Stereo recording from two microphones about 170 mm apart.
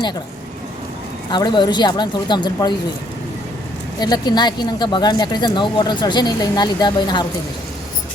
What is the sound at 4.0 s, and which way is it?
Speech, 25° left (ahead or behind).